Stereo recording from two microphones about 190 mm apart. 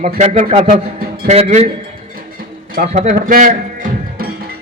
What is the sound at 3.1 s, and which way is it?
Music, 50° right (ahead or behind).